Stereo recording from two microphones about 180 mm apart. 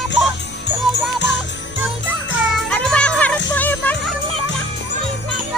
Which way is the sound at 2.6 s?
5° left (ahead or behind).